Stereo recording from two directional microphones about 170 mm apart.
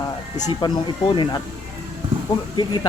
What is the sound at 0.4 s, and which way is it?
Speech, 25° left (ahead or behind).